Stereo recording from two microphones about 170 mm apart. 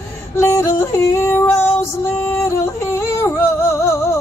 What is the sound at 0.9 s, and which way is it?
Music, 15° left (ahead or behind).